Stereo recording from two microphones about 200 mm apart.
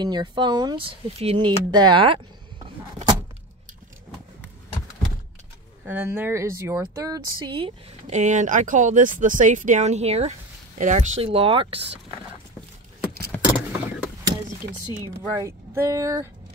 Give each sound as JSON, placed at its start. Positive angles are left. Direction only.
{"t": 0.0, "sound": "speech", "side_deg": -20}
{"t": 5.9, "sound": "speech", "side_deg": -10}
{"t": 13.5, "sound": "vehicle", "side_deg": -5}
{"t": 15.3, "sound": "speech", "side_deg": -15}